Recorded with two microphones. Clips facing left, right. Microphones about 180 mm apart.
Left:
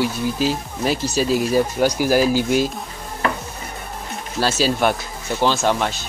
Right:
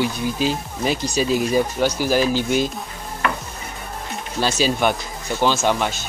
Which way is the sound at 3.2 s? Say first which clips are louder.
Left 1 dB; 35° left (ahead or behind).